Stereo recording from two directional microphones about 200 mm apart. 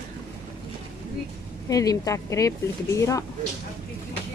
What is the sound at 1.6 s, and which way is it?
Speech, 15° left (ahead or behind).